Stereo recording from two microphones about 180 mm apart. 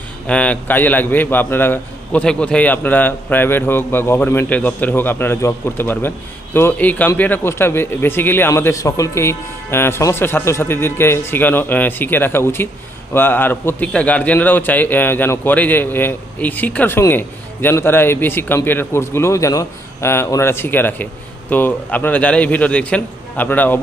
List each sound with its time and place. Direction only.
0.3 s a man's voice: 5° left (ahead or behind)